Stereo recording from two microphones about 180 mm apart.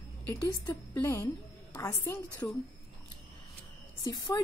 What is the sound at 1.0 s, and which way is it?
Speech, 15° left (ahead or behind).